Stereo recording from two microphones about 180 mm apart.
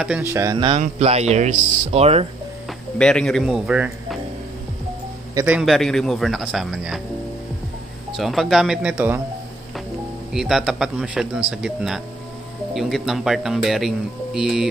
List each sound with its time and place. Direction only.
0.0 s speech: 10° right (ahead or behind)
0.7 s speech: 35° right (ahead or behind)
3.0 s speech: 5° left (ahead or behind)
5.3 s speech: 10° right (ahead or behind)
8.2 s speech: centre (ahead or behind)
10.3 s speech: centre (ahead or behind)